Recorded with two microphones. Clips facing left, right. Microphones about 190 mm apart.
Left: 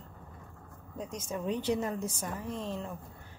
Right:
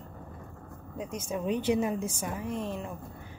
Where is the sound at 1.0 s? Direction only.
10° right (ahead or behind).